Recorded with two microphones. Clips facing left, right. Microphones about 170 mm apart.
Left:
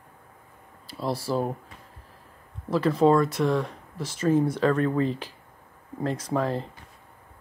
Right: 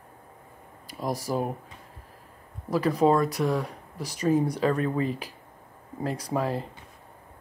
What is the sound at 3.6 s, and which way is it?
Speech, 40° right (ahead or behind).